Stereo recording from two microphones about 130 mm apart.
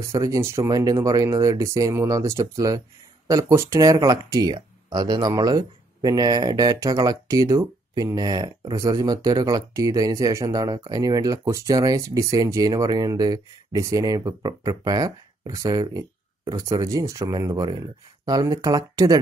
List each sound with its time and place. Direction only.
0.1 s speech: 25° right (ahead or behind)